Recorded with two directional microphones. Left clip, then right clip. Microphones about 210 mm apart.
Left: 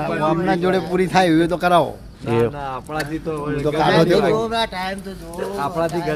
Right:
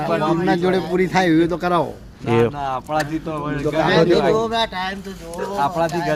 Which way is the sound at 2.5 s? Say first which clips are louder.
Right 4 dB; 35° right (ahead or behind).